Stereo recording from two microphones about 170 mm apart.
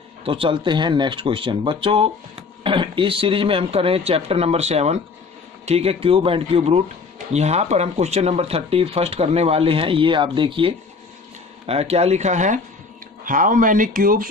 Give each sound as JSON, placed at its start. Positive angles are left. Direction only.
{"t": 0.3, "sound": "speech", "side_deg": -30}